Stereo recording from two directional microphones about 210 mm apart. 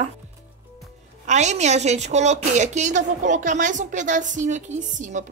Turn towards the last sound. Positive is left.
turn(degrees=-35)  # may be behind; listen again after turning